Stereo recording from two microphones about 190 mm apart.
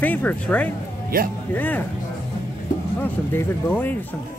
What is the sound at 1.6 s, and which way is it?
Speech, 10° left (ahead or behind).